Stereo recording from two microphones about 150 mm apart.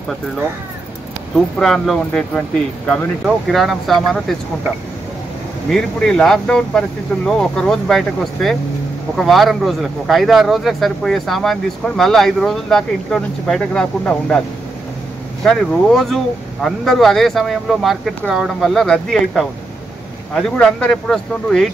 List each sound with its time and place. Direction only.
1.6 s speech: centre (ahead or behind)
5.7 s speech: 5° left (ahead or behind)
15.4 s speech: 5° left (ahead or behind)